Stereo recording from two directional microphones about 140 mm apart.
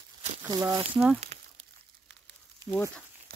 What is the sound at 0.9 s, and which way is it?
Speech, 10° right (ahead or behind).